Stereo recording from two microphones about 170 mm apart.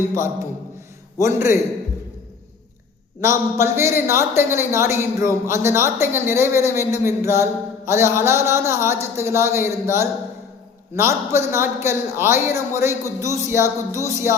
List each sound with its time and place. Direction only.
1.2 s a woman's voice: 15° right (ahead or behind)
3.2 s a woman's voice: 15° right (ahead or behind)